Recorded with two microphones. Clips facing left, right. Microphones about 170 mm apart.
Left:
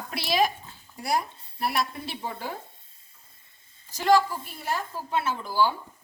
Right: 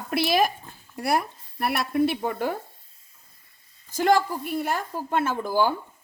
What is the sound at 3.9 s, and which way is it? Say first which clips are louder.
A woman's voice: right 1 dB; 50° right (ahead or behind).